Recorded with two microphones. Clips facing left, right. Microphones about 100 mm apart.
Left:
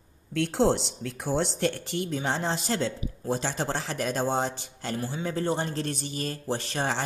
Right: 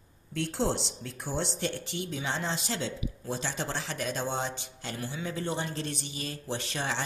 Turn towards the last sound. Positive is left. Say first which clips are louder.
# left 4 dB
turn(degrees=40)  # may be behind; listen again after turning